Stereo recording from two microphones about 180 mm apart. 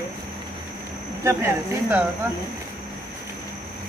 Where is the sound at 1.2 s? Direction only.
15° right (ahead or behind).